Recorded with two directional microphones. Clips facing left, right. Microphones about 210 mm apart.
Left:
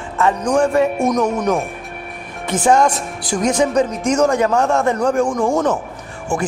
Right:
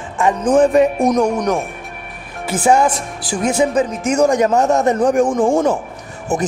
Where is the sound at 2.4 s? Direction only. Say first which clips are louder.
Even; 10° right (ahead or behind).